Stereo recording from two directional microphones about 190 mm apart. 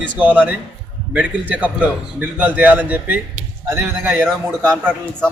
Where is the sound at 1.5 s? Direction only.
10° right (ahead or behind).